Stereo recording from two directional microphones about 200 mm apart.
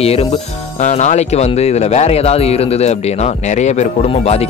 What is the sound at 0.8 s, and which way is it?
Speech, 35° left (ahead or behind).